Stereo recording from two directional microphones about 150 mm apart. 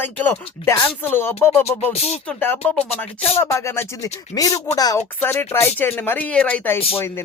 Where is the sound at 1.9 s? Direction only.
45° left (ahead or behind).